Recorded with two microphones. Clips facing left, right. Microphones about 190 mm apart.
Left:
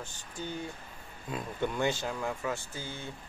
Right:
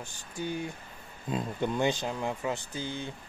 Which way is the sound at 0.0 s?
10° right (ahead or behind).